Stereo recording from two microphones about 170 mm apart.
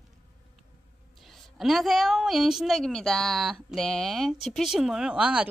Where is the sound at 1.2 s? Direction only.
Centre (ahead or behind).